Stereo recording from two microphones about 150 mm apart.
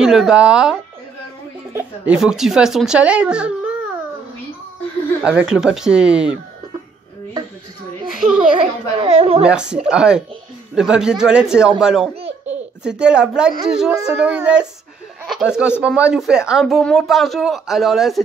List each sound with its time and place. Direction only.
0.0 s speech: 5° right (ahead or behind)
2.1 s speech: 5° right (ahead or behind)
5.2 s speech: 5° right (ahead or behind)
8.2 s a child's voice: 5° right (ahead or behind)
8.5 s a woman's voice: 40° right (ahead or behind)
9.4 s speech: 5° right (ahead or behind)